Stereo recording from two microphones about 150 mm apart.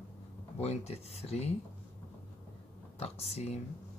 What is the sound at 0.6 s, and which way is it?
Speech, 45° left (ahead or behind).